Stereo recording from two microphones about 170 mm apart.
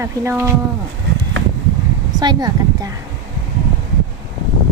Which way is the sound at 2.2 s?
25° right (ahead or behind).